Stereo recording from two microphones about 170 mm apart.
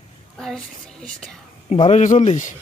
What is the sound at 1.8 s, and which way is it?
Speech, 45° left (ahead or behind).